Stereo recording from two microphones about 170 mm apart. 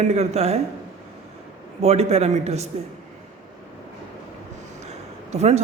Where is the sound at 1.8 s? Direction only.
40° right (ahead or behind).